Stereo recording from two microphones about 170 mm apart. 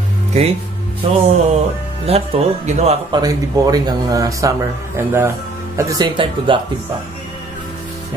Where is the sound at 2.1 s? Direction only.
35° right (ahead or behind).